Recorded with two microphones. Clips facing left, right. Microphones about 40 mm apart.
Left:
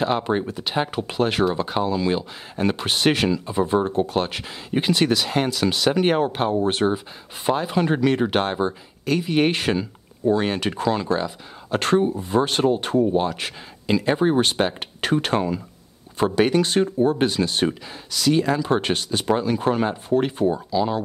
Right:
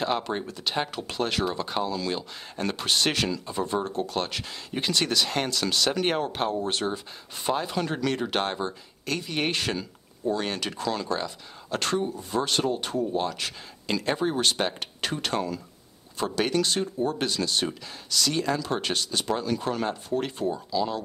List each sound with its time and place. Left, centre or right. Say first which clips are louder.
0.2 s speech: left 7 dB; centre
13.1 s speech: left 6 dB; centre
15.0 s speech: left 8 dB; left